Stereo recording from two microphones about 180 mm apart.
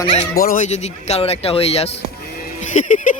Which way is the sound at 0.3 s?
50° left (ahead or behind).